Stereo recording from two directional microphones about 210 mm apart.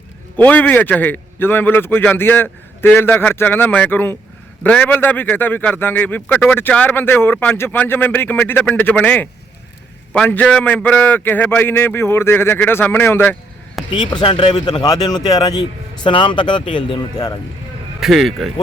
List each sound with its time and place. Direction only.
0.4 s speech: 10° left (ahead or behind)
13.9 s speech: 20° left (ahead or behind)
18.0 s speech: centre (ahead or behind)